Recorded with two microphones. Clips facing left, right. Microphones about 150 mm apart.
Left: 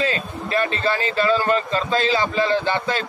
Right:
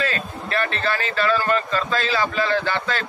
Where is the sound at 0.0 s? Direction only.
20° left (ahead or behind).